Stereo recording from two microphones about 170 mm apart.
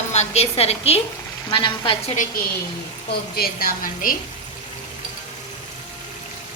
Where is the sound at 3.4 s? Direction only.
60° left (ahead or behind).